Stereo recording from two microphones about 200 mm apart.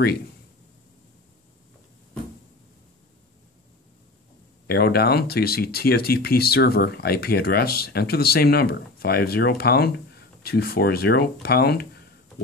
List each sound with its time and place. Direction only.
4.6 s speech: 50° left (ahead or behind)